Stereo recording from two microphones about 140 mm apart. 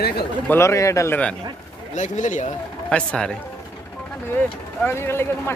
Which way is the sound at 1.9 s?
60° left (ahead or behind).